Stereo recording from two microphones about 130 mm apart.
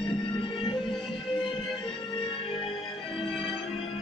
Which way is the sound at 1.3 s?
40° left (ahead or behind).